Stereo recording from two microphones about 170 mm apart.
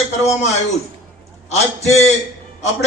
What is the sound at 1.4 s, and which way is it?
Speech, 40° left (ahead or behind).